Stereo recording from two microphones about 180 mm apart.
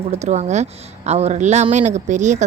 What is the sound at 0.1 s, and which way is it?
A woman's voice, 40° right (ahead or behind).